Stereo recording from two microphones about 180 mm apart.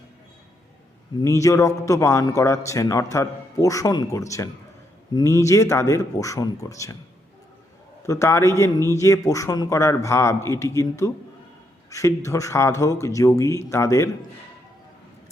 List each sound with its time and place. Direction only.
1.2 s a man's voice: 15° left (ahead or behind)
8.0 s a man's voice: 15° left (ahead or behind)